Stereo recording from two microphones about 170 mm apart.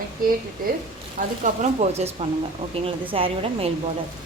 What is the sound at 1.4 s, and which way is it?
A woman's voice, 40° right (ahead or behind).